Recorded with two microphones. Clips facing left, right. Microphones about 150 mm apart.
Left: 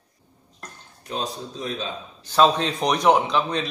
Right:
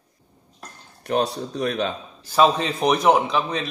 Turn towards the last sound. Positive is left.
turn(degrees=-5)  # may be behind; listen again after turning